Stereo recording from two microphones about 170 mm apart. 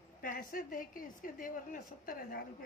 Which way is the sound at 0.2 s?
55° left (ahead or behind).